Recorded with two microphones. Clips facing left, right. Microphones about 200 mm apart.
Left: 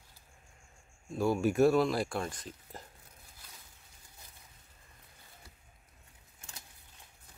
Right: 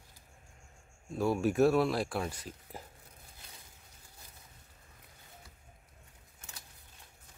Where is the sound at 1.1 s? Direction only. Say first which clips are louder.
Left 1 dB; centre (ahead or behind).